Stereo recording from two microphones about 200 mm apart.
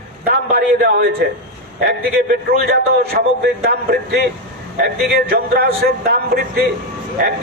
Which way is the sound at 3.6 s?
50° right (ahead or behind).